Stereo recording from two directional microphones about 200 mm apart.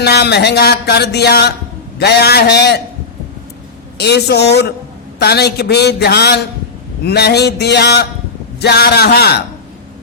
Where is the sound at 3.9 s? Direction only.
55° left (ahead or behind).